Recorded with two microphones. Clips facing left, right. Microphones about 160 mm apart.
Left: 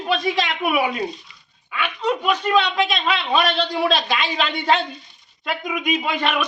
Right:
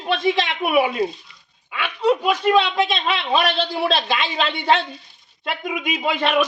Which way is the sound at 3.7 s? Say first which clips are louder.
Left 1 dB; 5° right (ahead or behind).